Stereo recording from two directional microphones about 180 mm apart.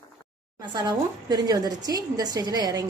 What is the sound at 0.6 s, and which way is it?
A woman's voice, 25° right (ahead or behind).